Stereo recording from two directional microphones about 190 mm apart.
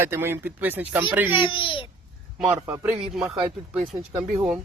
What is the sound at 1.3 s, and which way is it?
Speech, 25° left (ahead or behind).